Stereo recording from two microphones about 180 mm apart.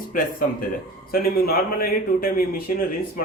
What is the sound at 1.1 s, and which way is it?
Speech, 55° left (ahead or behind).